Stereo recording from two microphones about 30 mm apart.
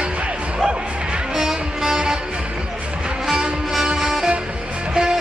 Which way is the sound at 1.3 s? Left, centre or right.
Centre.